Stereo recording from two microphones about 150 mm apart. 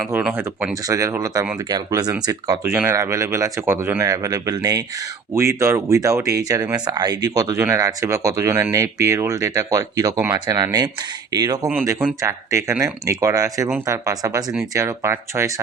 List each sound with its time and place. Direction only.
0.9 s speech: 20° right (ahead or behind)